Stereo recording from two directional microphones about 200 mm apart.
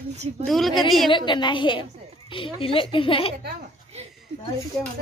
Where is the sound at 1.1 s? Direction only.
25° left (ahead or behind).